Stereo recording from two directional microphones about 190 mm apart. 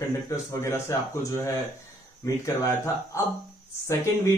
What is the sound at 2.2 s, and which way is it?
Speech, 15° left (ahead or behind).